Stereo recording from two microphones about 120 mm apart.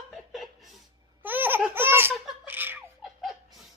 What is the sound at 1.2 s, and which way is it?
Laughter, 15° right (ahead or behind).